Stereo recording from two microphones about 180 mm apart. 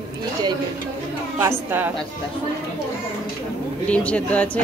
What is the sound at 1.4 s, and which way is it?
Speech, 10° right (ahead or behind).